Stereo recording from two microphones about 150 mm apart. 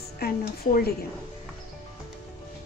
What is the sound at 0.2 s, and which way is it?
Speech, 85° left.